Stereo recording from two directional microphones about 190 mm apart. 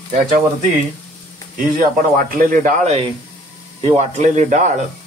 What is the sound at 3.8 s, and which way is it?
Speech, 35° right (ahead or behind).